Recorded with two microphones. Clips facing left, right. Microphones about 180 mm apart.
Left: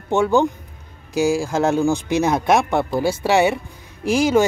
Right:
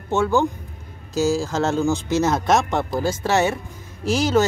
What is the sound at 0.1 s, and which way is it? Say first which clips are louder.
Speech: left 3 dB; 15° left (ahead or behind).